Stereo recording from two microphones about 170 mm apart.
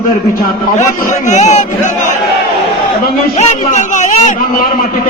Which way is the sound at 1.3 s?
45° left (ahead or behind).